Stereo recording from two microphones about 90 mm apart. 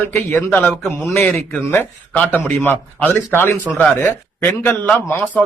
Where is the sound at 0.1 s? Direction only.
30° left (ahead or behind).